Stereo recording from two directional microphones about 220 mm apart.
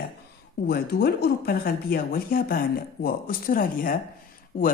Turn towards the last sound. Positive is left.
turn(degrees=40)  # may be behind; listen again after turning